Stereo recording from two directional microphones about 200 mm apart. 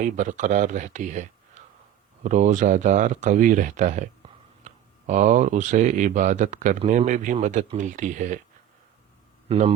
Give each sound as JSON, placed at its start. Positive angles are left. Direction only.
{"t": 0.0, "sound": "speech", "side_deg": -40}
{"t": 9.5, "sound": "speech", "side_deg": -30}